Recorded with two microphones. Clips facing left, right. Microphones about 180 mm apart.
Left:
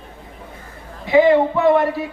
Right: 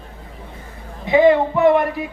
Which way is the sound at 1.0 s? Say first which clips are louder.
Even; 20° right (ahead or behind).